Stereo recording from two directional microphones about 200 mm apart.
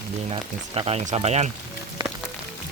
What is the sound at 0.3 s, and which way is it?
Speech, 30° right (ahead or behind).